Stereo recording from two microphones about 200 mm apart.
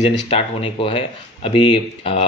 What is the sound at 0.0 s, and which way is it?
Speech, 30° left (ahead or behind).